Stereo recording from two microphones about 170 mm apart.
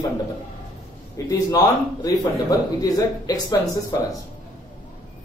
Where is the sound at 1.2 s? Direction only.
20° left (ahead or behind).